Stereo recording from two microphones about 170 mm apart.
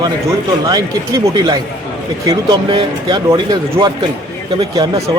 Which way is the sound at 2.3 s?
25° right (ahead or behind).